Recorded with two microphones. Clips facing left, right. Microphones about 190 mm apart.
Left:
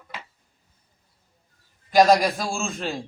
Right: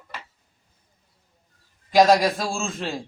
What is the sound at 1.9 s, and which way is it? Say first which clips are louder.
Speech: even; centre (ahead or behind).